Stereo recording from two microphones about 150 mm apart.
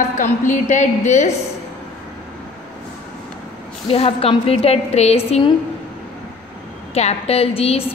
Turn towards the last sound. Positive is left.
turn(degrees=40)  # may be behind; listen again after turning